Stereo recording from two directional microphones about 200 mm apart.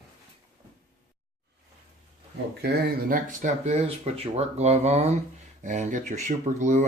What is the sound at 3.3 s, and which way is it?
Speech, 35° right (ahead or behind).